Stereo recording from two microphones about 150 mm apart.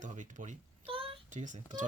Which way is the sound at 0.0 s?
55° right (ahead or behind).